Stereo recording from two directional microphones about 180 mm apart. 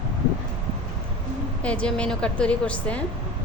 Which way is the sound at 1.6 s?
5° left (ahead or behind).